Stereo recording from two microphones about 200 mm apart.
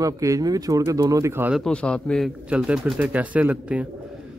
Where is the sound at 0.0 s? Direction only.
15° right (ahead or behind).